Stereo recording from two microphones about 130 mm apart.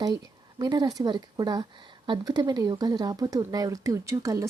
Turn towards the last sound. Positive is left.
turn(degrees=-25)  # may be behind; listen again after turning